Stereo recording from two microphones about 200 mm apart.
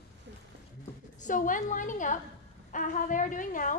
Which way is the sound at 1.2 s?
40° left (ahead or behind).